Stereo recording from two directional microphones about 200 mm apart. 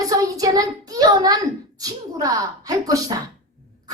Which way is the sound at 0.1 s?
20° right (ahead or behind).